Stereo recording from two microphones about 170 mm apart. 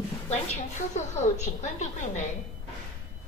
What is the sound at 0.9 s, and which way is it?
A woman's voice, 45° left (ahead or behind).